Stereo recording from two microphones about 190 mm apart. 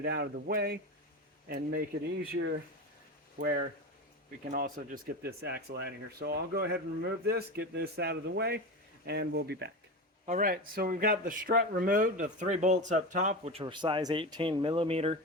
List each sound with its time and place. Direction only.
0.0 s speech: 55° right (ahead or behind)
3.3 s speech: 50° right (ahead or behind)
10.2 s speech: 45° right (ahead or behind)